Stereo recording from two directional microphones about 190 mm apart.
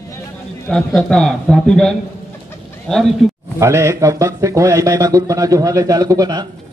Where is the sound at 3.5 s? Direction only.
15° right (ahead or behind).